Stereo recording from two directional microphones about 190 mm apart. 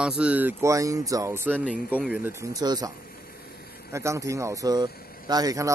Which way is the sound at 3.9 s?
15° right (ahead or behind).